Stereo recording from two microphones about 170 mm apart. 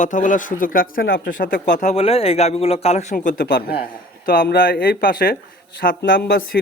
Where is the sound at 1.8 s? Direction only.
40° left (ahead or behind).